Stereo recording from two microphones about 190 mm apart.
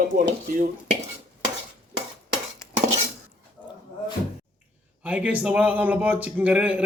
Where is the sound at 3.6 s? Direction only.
10° left (ahead or behind).